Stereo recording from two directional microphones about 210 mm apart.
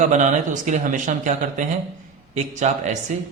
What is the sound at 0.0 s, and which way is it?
Speech, 35° right (ahead or behind).